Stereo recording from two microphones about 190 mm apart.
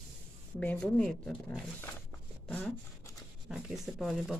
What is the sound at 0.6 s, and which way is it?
Speech, 5° left (ahead or behind).